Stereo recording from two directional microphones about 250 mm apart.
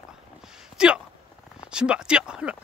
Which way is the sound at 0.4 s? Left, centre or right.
Centre.